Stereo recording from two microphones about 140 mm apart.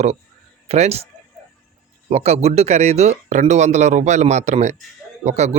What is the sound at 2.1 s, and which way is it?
Speech, 50° right (ahead or behind).